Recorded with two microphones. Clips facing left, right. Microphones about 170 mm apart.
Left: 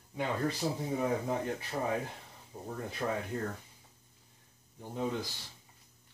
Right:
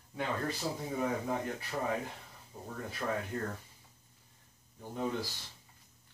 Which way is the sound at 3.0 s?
15° left (ahead or behind).